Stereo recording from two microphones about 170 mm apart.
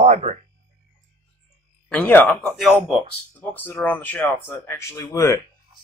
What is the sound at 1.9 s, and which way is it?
Speech, 10° left (ahead or behind).